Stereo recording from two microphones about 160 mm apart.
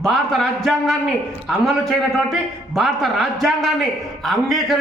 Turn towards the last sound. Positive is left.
turn(degrees=0)  # may be behind; listen again after turning